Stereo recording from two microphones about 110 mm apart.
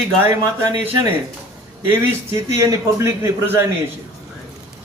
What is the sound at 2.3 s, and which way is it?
Speech, 25° right (ahead or behind).